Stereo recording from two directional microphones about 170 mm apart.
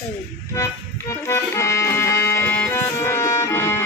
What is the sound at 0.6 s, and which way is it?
Speech, 15° left (ahead or behind).